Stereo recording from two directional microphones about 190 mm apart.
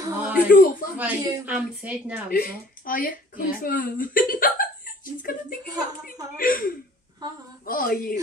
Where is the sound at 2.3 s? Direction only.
50° left (ahead or behind).